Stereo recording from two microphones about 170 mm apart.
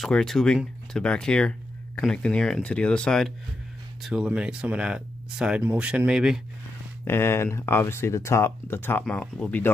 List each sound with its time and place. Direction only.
0.0 s speech: centre (ahead or behind)
7.1 s speech: 15° left (ahead or behind)